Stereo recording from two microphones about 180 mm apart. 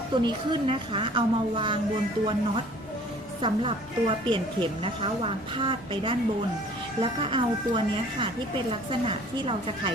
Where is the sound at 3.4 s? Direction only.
30° right (ahead or behind).